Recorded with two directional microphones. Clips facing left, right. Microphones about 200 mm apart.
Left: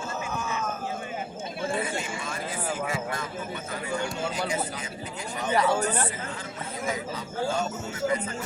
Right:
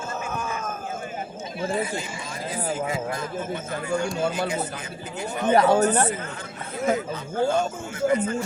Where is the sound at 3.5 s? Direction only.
45° right (ahead or behind).